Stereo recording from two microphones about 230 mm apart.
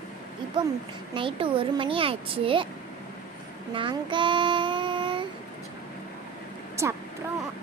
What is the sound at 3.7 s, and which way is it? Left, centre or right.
Child singing, right.